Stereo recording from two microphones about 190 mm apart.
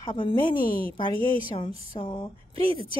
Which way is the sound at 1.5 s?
25° left (ahead or behind).